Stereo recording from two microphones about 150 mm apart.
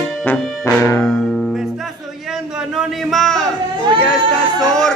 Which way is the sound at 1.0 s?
5° left (ahead or behind).